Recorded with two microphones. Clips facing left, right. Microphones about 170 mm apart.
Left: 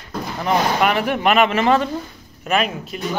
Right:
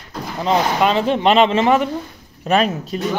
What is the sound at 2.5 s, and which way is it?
Speech, 35° right (ahead or behind).